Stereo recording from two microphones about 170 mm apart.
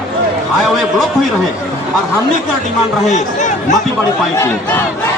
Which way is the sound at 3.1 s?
45° left (ahead or behind).